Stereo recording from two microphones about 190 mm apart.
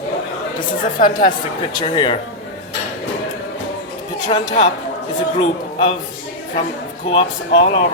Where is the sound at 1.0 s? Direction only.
40° left (ahead or behind).